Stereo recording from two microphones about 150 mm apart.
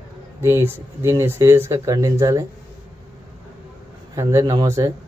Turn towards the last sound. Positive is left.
turn(degrees=-20)  # may be behind; listen again after turning